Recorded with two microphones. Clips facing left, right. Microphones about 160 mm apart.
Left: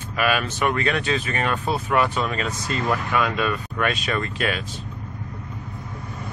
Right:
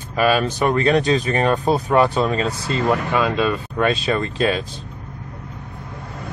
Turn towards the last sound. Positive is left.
turn(degrees=-30)  # may be behind; listen again after turning